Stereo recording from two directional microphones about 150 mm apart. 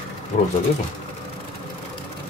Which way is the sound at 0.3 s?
55° left (ahead or behind).